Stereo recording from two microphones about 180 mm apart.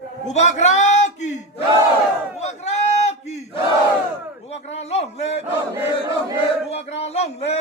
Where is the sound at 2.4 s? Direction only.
40° left (ahead or behind).